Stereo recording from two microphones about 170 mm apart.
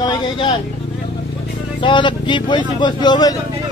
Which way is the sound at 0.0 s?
25° left (ahead or behind).